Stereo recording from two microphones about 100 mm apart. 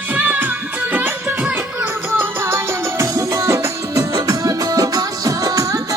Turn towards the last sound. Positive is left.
turn(degrees=-35)  # may be behind; listen again after turning